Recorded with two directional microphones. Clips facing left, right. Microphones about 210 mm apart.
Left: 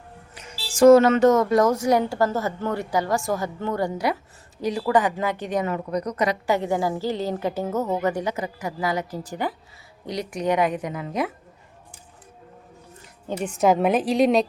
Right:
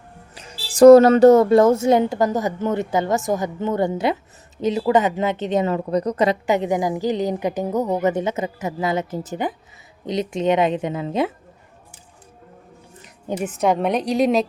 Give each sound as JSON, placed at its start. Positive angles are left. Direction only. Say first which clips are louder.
{"t": 0.3, "sound": "a woman's voice", "louder": "right 6 dB", "side_deg": -35}
{"t": 13.4, "sound": "a woman's voice", "louder": "left 1 dB", "side_deg": 0}